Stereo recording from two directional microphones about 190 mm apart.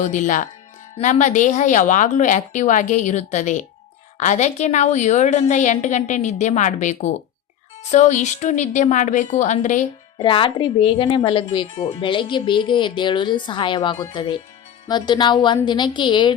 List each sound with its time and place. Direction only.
0.0 s a woman's voice: 40° left (ahead or behind)
10.2 s speech: 25° left (ahead or behind)